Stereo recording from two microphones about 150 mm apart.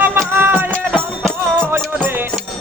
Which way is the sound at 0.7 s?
5° left (ahead or behind).